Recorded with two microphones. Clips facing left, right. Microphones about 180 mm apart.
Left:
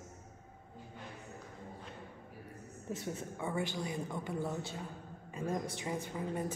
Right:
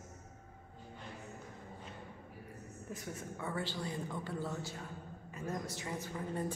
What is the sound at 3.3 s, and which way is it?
A woman's voice, 15° left (ahead or behind).